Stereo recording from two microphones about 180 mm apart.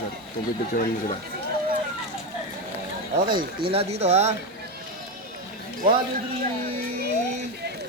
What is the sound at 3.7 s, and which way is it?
Speech, 35° right (ahead or behind).